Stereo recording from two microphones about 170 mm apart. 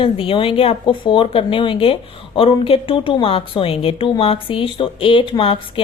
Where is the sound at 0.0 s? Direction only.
30° left (ahead or behind).